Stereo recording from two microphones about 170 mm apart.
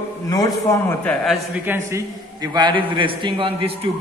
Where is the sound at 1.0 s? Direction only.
5° left (ahead or behind).